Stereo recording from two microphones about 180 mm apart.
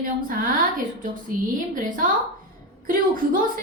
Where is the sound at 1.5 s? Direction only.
50° right (ahead or behind).